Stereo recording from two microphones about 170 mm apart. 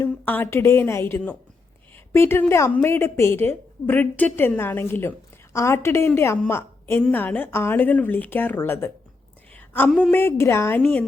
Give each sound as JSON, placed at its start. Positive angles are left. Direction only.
{"t": 0.0, "sound": "a woman's voice", "side_deg": 10}
{"t": 9.5, "sound": "a sound", "side_deg": 10}
{"t": 9.9, "sound": "a woman's voice", "side_deg": 5}